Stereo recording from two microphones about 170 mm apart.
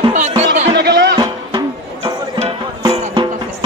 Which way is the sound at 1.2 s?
25° right (ahead or behind).